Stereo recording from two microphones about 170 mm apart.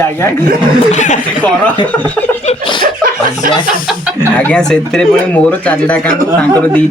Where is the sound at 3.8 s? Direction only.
5° right (ahead or behind).